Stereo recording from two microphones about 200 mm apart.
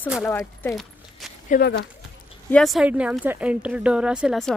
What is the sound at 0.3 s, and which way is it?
Speech, 15° left (ahead or behind).